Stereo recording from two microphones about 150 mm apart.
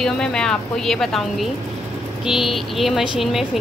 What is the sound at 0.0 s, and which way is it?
A woman's voice, 5° left (ahead or behind).